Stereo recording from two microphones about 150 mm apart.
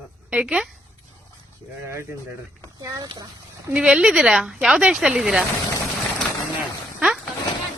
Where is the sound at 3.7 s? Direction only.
5° right (ahead or behind).